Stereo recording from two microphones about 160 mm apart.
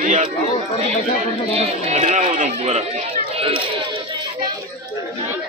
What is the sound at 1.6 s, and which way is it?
Speech, 45° right (ahead or behind).